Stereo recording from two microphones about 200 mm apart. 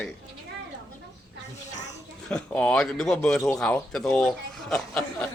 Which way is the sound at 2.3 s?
5° left (ahead or behind).